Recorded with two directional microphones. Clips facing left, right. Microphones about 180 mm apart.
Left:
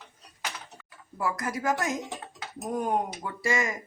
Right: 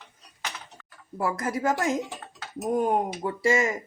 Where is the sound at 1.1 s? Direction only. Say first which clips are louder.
Right 3 dB; 30° right (ahead or behind).